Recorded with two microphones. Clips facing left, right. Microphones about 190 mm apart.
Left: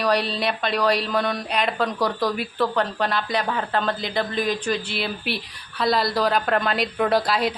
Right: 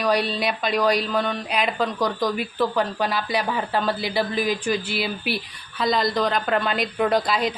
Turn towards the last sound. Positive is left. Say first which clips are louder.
# left 1 dB
turn(degrees=0)  # may be behind; listen again after turning